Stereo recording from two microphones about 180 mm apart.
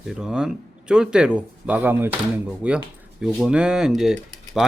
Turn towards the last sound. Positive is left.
turn(degrees=0)  # may be behind; listen again after turning